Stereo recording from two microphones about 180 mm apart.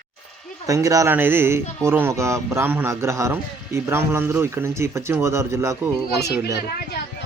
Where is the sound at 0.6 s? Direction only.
20° right (ahead or behind).